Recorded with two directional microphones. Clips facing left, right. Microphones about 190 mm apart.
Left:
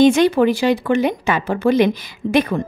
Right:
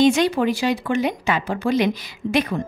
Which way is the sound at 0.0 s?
55° left (ahead or behind).